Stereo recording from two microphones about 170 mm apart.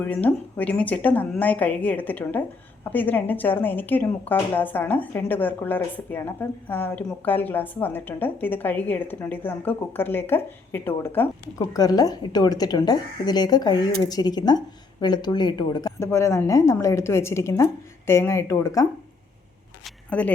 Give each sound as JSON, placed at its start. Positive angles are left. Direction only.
{"t": 0.0, "sound": "a woman's voice", "side_deg": 10}
{"t": 19.8, "sound": "camera", "side_deg": 10}